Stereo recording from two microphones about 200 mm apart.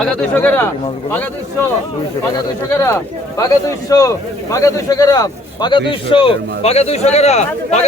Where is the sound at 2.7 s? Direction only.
15° left (ahead or behind).